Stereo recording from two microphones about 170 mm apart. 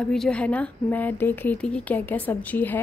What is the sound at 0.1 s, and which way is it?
A woman's voice, 5° left (ahead or behind).